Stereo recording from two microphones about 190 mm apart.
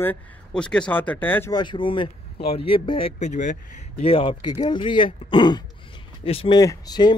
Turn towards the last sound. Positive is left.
turn(degrees=20)  # may be behind; listen again after turning